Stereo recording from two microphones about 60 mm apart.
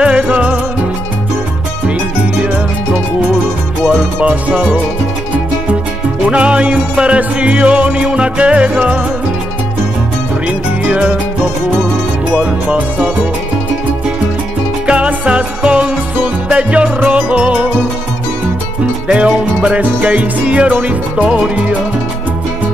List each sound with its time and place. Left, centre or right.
0.0 s music: centre
3.9 s music: right
6.2 s music: right
10.4 s music: right
12.4 s music: right
14.9 s music: centre
19.0 s music: right